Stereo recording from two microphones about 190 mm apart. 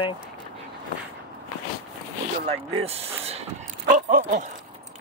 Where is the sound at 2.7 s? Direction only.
30° right (ahead or behind).